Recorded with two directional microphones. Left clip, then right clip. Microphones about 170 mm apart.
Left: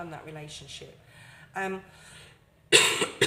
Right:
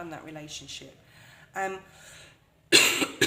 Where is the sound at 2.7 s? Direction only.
40° right (ahead or behind).